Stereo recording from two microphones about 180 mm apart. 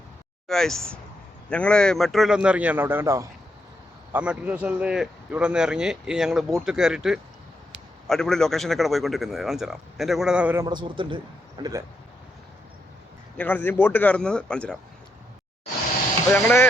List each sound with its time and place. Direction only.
0.4 s a man's voice: centre (ahead or behind)
10.7 s speech: 25° right (ahead or behind)
13.3 s a man's voice: 10° left (ahead or behind)
16.3 s a man's voice: 10° left (ahead or behind)